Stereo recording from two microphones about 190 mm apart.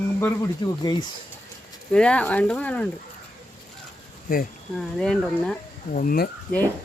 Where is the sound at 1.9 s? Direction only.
5° left (ahead or behind).